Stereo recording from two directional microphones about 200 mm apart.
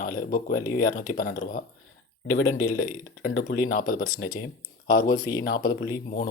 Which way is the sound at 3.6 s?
45° left (ahead or behind).